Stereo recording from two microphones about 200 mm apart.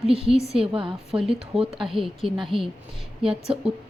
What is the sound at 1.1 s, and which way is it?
A woman's voice, centre (ahead or behind).